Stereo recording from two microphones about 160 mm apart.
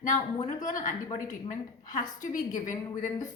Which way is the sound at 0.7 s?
50° left (ahead or behind).